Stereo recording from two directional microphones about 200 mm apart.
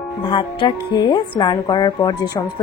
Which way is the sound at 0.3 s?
25° left (ahead or behind).